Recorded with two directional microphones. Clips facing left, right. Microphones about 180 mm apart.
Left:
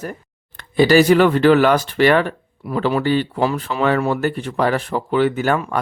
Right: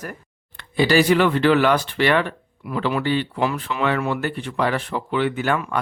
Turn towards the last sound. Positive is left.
turn(degrees=35)  # may be behind; listen again after turning